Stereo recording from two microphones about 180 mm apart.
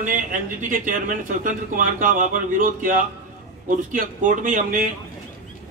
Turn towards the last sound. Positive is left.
turn(degrees=-50)  # may be behind; listen again after turning